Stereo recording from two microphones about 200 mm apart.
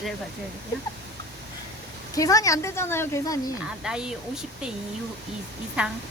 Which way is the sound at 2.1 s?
15° left (ahead or behind).